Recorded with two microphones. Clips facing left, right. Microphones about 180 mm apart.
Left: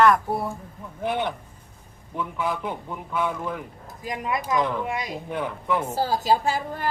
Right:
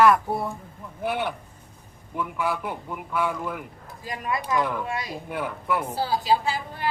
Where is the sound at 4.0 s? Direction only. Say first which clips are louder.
Left 2 dB; 20° left (ahead or behind).